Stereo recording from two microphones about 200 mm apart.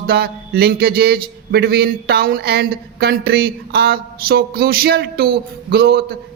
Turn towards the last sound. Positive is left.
turn(degrees=-50)  # may be behind; listen again after turning